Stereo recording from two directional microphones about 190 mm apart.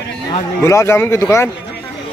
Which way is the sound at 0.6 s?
15° left (ahead or behind).